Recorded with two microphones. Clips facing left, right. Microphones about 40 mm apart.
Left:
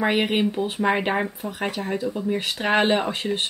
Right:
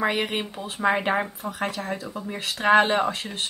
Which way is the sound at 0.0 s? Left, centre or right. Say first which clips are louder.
Left 4 dB; centre.